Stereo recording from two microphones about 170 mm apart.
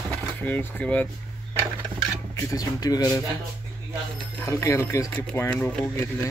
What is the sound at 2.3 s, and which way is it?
Speech, 15° left (ahead or behind).